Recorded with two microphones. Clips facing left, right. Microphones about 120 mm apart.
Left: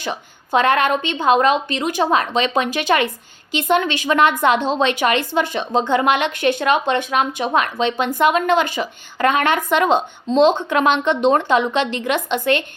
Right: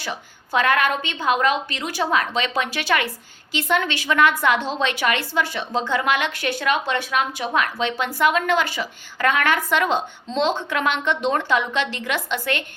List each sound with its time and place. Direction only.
0.0 s a woman's voice: 20° left (ahead or behind)